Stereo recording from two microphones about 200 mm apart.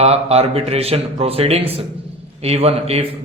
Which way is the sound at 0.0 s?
30° right (ahead or behind).